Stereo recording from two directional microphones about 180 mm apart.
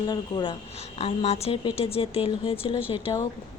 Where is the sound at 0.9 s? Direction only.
35° left (ahead or behind).